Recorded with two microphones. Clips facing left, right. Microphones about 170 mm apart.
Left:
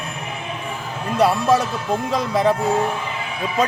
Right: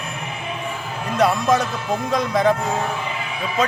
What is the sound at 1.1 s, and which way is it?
Music, 30° left (ahead or behind).